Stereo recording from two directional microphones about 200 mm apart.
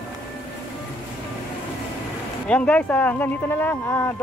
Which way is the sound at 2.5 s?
5° left (ahead or behind).